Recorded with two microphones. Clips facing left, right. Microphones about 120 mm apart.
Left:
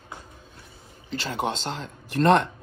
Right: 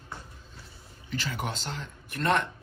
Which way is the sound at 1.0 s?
30° left (ahead or behind).